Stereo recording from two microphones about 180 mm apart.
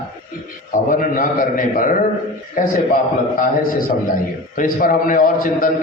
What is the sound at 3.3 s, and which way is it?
A man's voice, 50° left (ahead or behind).